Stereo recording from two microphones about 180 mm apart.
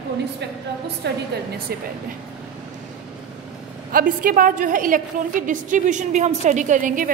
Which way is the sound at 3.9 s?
50° right (ahead or behind).